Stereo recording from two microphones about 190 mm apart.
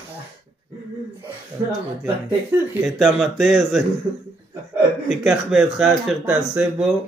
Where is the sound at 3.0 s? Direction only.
Centre (ahead or behind).